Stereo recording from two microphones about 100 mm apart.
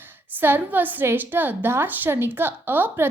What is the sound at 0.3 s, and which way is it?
A woman's voice, 20° right (ahead or behind).